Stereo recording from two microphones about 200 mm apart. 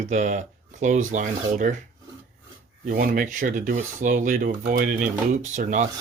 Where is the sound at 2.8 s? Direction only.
40° right (ahead or behind).